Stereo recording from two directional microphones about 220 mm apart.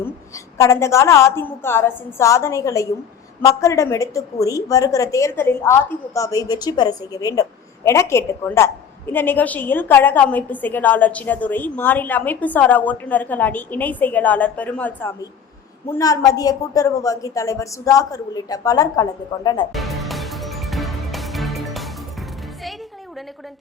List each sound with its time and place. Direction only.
0.6 s a woman's voice: 15° left (ahead or behind)
19.7 s music: centre (ahead or behind)